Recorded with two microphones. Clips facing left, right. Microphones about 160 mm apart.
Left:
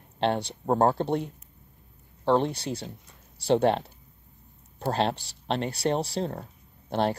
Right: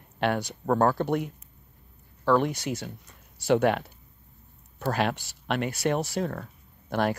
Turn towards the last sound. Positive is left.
turn(degrees=30)  # may be behind; listen again after turning